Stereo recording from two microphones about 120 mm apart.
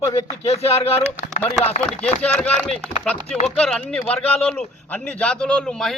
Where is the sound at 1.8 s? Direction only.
5° left (ahead or behind).